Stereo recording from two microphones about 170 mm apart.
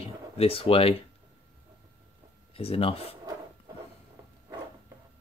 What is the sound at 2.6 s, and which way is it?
Speech, 35° left (ahead or behind).